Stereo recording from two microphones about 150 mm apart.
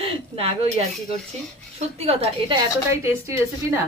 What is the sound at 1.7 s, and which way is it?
Speech, 45° right (ahead or behind).